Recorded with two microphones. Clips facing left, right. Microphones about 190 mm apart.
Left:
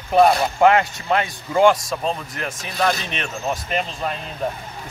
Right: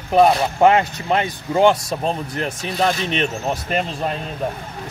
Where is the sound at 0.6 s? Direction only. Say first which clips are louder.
Right 2 dB; 20° right (ahead or behind).